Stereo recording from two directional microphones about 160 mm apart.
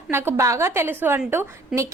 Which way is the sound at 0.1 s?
15° right (ahead or behind).